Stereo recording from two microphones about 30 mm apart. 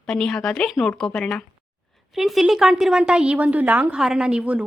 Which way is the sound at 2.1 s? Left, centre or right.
Centre.